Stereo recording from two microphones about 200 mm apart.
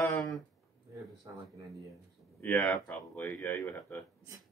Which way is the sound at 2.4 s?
10° left (ahead or behind).